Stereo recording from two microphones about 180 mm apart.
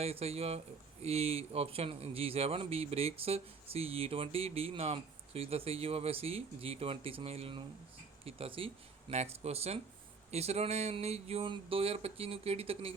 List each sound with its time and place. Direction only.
0.0 s speech: 35° right (ahead or behind)